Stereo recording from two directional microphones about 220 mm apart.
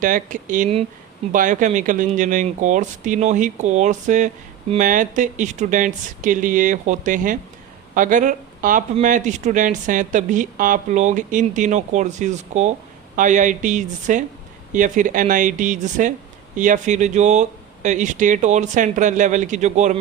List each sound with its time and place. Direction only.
0.0 s speech: 35° right (ahead or behind)